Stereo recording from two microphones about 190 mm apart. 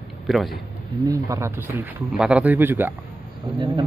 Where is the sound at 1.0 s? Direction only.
15° right (ahead or behind).